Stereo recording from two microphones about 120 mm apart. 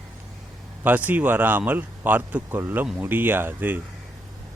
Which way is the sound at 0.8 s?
15° right (ahead or behind).